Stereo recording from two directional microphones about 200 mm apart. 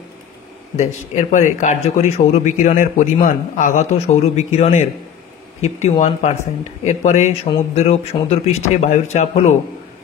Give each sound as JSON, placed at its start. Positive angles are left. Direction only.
{"t": 0.7, "sound": "speech", "side_deg": 35}